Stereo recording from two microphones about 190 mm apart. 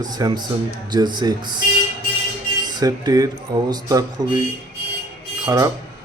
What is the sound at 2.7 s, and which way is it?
Speech, 20° right (ahead or behind).